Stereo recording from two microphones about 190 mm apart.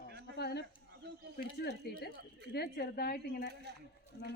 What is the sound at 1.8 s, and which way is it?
Speech, 60° left (ahead or behind).